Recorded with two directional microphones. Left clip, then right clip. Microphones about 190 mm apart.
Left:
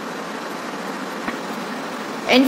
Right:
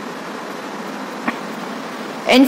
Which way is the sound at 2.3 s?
25° right (ahead or behind).